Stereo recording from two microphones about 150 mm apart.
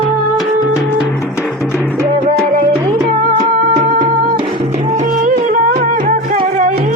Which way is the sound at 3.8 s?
55° right (ahead or behind).